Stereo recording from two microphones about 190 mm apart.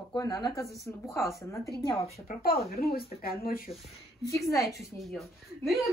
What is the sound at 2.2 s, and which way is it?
Speech, 50° left (ahead or behind).